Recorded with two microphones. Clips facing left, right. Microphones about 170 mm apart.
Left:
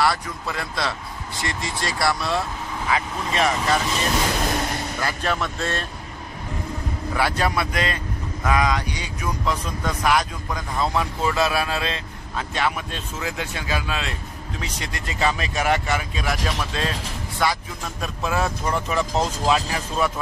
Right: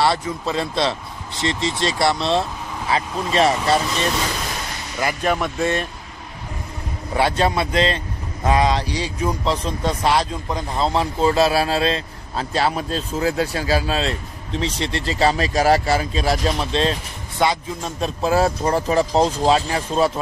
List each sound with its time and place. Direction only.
0.0 s speech: 25° right (ahead or behind)
5.0 s speech: 10° right (ahead or behind)
7.2 s speech: 25° right (ahead or behind)